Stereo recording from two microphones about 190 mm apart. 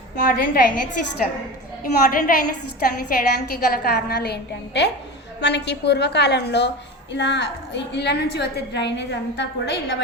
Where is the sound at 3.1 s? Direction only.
50° left (ahead or behind).